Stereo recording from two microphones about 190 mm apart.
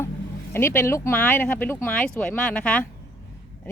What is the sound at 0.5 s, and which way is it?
Speech, 15° left (ahead or behind).